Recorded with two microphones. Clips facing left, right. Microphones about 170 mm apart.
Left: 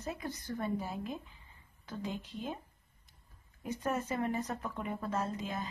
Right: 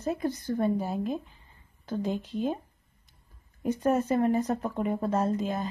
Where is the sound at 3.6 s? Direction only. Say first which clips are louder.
Right 10 dB; 40° right (ahead or behind).